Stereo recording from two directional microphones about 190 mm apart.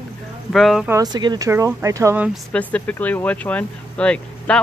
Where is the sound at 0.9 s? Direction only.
20° right (ahead or behind).